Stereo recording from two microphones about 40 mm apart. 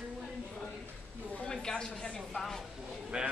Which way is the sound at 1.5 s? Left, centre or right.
Centre.